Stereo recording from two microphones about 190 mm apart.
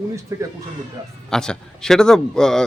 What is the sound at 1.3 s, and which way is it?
A man's voice, 5° left (ahead or behind).